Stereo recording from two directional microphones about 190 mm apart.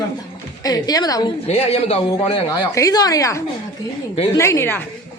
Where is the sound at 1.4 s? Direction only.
35° left (ahead or behind).